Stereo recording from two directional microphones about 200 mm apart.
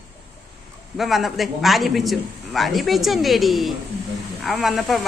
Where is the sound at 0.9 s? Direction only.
Centre (ahead or behind).